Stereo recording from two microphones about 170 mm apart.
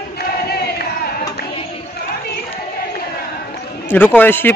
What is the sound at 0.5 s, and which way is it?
Chant, 70° left (ahead or behind).